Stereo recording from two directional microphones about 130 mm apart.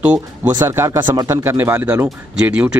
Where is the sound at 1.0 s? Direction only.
30° right (ahead or behind).